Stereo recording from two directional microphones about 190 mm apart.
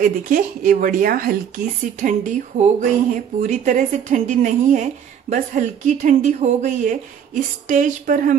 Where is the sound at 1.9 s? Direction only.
40° right (ahead or behind).